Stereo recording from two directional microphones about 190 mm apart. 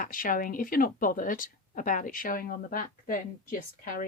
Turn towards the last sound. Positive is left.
turn(degrees=45)  # may be behind; listen again after turning